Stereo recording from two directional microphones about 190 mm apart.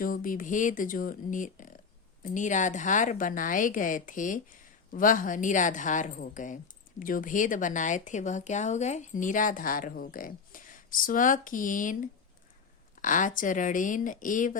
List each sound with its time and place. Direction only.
0.0 s speech: 45° left (ahead or behind)